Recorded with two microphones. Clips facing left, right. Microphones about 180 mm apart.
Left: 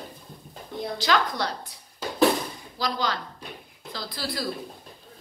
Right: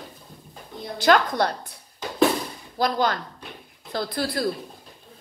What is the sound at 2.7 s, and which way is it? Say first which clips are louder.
A woman's voice: right 6 dB; 55° right (ahead or behind).